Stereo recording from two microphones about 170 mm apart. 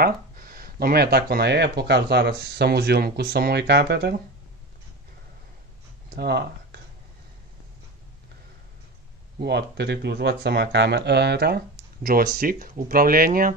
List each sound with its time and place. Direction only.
0.0 s speech: 60° right (ahead or behind); by 4.2 s 80° right
6.0 s a sound: 70° right (ahead or behind)
9.4 s speech: 80° right; by 13.5 s 60° right (ahead or behind)